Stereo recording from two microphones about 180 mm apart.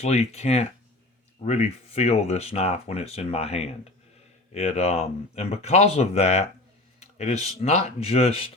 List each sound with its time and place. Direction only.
0.0 s speech: 35° left (ahead or behind)